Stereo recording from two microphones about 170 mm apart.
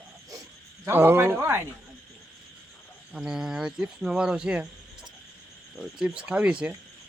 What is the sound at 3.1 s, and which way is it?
A man's voice, 5° right (ahead or behind).